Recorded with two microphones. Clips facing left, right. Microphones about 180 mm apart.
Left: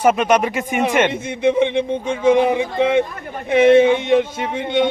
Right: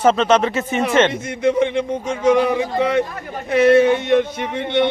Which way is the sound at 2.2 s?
25° left (ahead or behind).